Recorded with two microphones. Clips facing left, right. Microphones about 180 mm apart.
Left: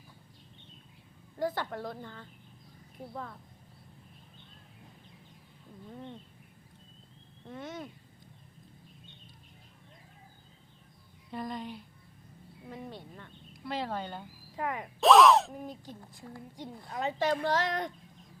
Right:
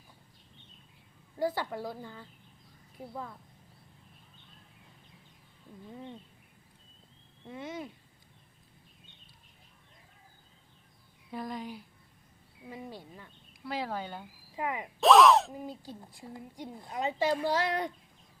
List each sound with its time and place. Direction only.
1.4 s a woman's voice: 10° right (ahead or behind)
3.0 s music: 5° right (ahead or behind)
5.9 s a woman's voice: 5° right (ahead or behind)
7.4 s a woman's voice: 10° right (ahead or behind)
11.3 s music: 5° right (ahead or behind)
12.6 s a woman's voice: 10° right (ahead or behind)
15.7 s speech: 15° left (ahead or behind)
16.0 s a woman's voice: 15° right (ahead or behind)